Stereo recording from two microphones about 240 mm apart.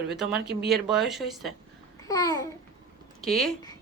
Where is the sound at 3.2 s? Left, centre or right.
Centre.